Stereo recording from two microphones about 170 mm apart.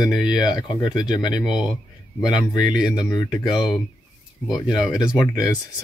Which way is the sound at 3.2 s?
5° right (ahead or behind).